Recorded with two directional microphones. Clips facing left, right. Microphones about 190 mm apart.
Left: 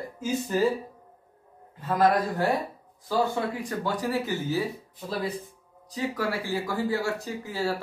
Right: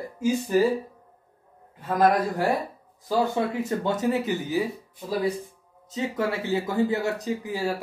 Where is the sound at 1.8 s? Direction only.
15° right (ahead or behind).